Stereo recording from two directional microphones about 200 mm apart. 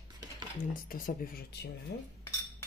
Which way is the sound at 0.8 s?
45° left (ahead or behind).